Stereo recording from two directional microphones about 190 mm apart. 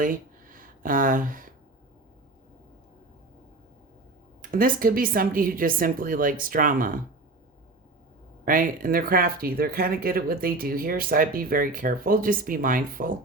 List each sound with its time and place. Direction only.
0.0 s a sound: 45° right (ahead or behind)
4.5 s speech: 50° right (ahead or behind)
8.4 s speech: 45° right (ahead or behind)